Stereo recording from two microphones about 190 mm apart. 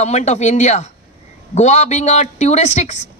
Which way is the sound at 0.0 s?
35° left (ahead or behind).